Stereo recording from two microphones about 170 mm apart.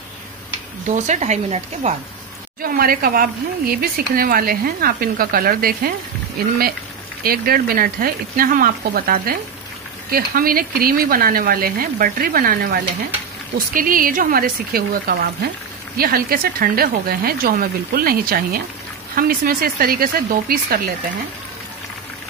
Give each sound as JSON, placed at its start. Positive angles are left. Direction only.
{"t": 0.9, "sound": "a woman's voice", "side_deg": -45}
{"t": 2.6, "sound": "speech", "side_deg": -60}
{"t": 7.2, "sound": "speech", "side_deg": -60}